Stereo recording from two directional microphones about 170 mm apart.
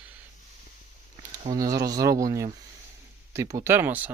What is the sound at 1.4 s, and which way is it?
Speech, 20° right (ahead or behind).